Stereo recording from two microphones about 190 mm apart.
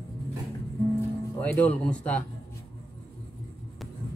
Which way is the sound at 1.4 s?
5° left (ahead or behind).